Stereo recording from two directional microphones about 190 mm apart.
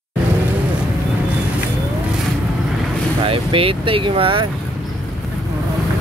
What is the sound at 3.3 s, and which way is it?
Speech, 30° right (ahead or behind).